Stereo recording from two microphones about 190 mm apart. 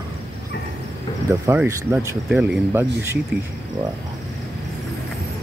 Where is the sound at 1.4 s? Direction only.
10° right (ahead or behind).